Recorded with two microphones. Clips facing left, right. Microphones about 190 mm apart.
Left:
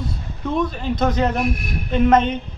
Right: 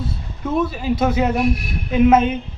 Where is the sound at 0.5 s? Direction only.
5° right (ahead or behind).